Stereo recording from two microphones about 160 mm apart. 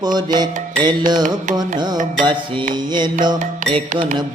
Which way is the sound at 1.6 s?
25° right (ahead or behind).